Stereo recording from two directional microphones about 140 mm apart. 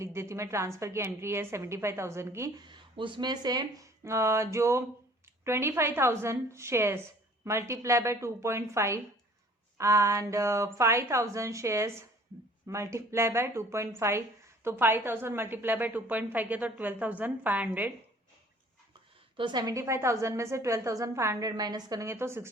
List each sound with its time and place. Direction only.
0.0 s a woman's voice: 20° right (ahead or behind)
2.6 s a woman's voice: 35° right (ahead or behind); by 17.7 s 10° right (ahead or behind)
19.4 s a woman's voice: 30° right (ahead or behind)